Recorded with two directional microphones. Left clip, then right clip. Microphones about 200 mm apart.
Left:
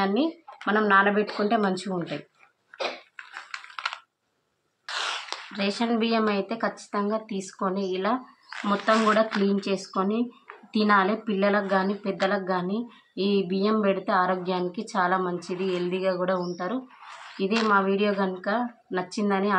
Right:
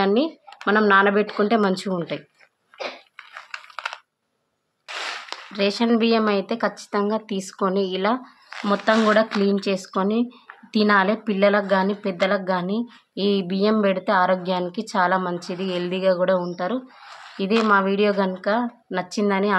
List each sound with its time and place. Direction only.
0.0 s a woman's voice: 50° right (ahead or behind)
3.5 s a sound: 15° right (ahead or behind)
4.8 s cap gun: 10° right (ahead or behind)
5.5 s a woman's voice: 50° right (ahead or behind)